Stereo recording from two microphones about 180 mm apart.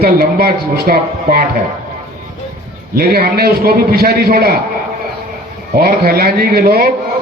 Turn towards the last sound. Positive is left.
turn(degrees=-55)  # may be behind; listen again after turning